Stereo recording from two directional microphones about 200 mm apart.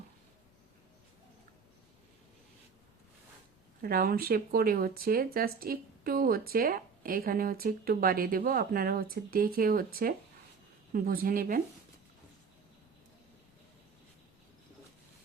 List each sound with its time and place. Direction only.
3.8 s speech: 45° right (ahead or behind)